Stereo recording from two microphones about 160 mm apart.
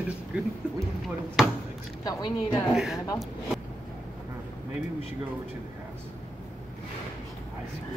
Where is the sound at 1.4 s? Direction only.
Centre (ahead or behind).